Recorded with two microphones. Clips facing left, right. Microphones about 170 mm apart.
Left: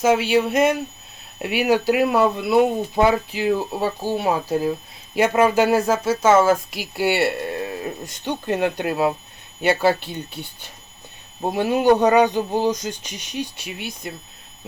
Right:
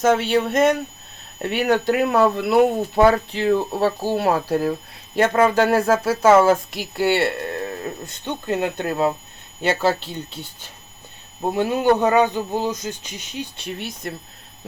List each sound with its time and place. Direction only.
0.0 s speech: 5° left (ahead or behind)
5.1 s speech: 10° left (ahead or behind)
13.7 s speech: centre (ahead or behind)